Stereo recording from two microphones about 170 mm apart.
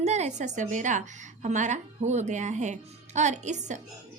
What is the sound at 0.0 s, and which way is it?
A woman's voice, 40° right (ahead or behind).